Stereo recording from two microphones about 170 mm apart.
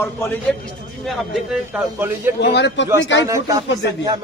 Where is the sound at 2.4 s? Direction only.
90° left.